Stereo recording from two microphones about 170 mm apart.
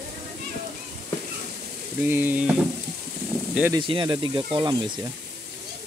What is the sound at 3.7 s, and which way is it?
Speech, 30° right (ahead or behind).